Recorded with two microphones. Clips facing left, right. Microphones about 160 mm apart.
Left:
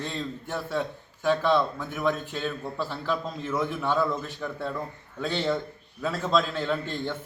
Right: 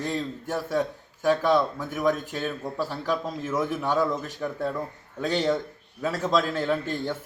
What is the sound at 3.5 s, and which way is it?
A man's voice, 10° right (ahead or behind).